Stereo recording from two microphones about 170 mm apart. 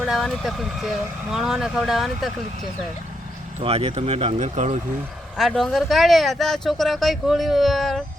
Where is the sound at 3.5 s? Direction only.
35° right (ahead or behind).